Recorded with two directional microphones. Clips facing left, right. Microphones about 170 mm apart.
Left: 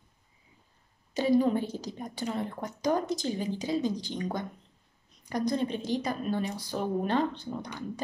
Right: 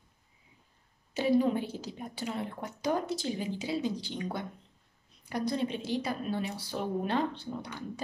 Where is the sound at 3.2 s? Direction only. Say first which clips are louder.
Left 2 dB; 40° left (ahead or behind).